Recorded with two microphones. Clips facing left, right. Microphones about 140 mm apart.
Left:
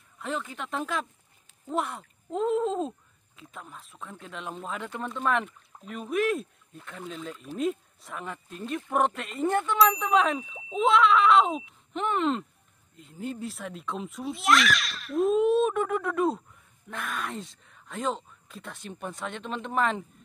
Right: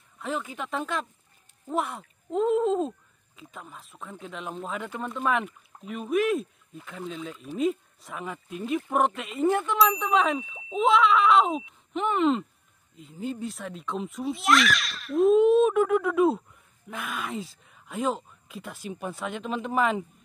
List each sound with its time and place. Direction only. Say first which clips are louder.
0.2 s speech: right 2 dB; centre (ahead or behind)